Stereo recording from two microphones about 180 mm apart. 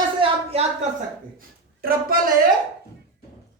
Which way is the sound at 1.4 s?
55° right (ahead or behind).